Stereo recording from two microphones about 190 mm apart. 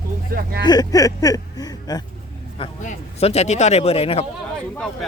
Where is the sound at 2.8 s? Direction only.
35° left (ahead or behind).